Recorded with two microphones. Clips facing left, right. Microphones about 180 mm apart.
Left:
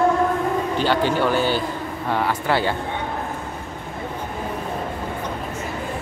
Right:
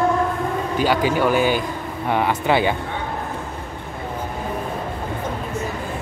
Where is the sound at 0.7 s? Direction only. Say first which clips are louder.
Right 3 dB; 10° right (ahead or behind).